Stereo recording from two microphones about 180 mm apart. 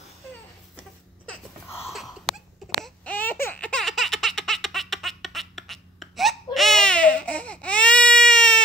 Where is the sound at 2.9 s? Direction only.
10° left (ahead or behind).